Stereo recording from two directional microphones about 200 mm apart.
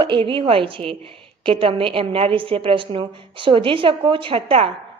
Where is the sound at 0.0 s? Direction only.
25° right (ahead or behind).